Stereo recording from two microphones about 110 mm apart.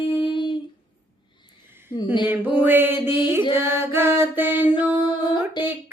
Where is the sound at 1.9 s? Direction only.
40° left (ahead or behind).